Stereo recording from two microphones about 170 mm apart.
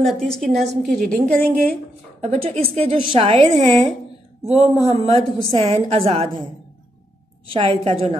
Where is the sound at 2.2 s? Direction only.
35° right (ahead or behind).